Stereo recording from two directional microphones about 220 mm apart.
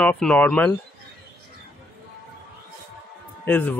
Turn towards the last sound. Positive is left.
turn(degrees=10)  # may be behind; listen again after turning